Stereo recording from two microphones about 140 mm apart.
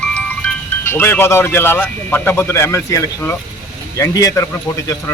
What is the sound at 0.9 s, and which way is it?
Speech, 15° left (ahead or behind).